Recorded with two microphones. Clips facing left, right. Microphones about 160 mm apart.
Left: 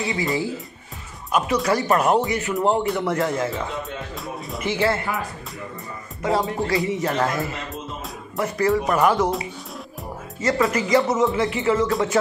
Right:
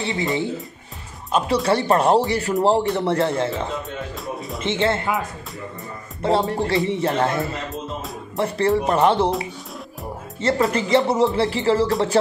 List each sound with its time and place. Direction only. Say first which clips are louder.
0.0 s speech: right 1 dB; 25° right (ahead or behind)
4.6 s speech: even; 25° right (ahead or behind)
6.2 s speech: right 2 dB; 30° right (ahead or behind)
10.7 s speech: right 1 dB; 30° right (ahead or behind)